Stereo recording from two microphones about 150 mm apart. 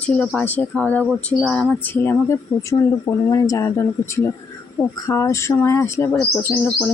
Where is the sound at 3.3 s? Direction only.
20° left (ahead or behind).